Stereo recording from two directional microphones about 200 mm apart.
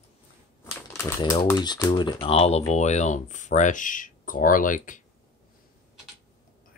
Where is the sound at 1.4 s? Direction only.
20° left (ahead or behind); by 5.0 s 40° left (ahead or behind).